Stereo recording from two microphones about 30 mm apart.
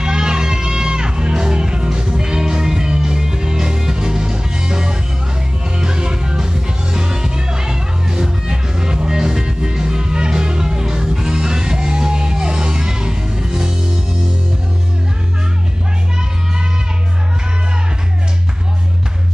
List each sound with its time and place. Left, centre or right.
0.0 s music: right